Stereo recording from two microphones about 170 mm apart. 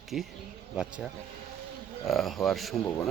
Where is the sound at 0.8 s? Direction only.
5° right (ahead or behind).